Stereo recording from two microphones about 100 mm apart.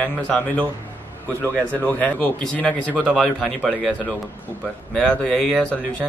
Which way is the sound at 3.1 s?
Centre (ahead or behind).